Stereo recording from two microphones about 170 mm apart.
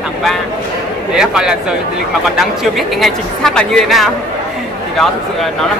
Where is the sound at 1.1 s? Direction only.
5° right (ahead or behind).